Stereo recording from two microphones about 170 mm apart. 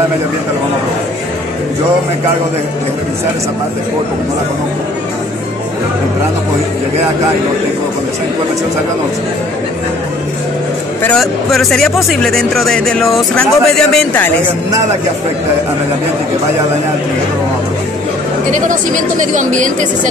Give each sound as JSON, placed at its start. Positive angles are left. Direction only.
{"t": 11.0, "sound": "speech", "side_deg": 5}
{"t": 18.5, "sound": "speech", "side_deg": -50}